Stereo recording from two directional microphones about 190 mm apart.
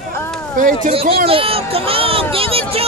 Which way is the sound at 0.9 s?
30° right (ahead or behind).